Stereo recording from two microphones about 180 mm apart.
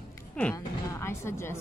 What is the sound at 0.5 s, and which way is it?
Speech, 15° left (ahead or behind).